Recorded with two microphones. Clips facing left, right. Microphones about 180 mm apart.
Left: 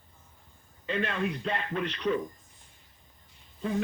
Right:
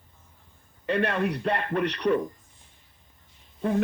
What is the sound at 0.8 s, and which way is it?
A man's voice, 65° right (ahead or behind).